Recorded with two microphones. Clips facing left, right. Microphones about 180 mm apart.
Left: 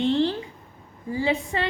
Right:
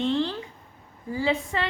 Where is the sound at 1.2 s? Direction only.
20° left (ahead or behind).